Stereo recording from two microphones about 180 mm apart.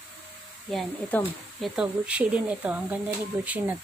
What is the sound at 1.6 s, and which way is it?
Speech, 5° right (ahead or behind).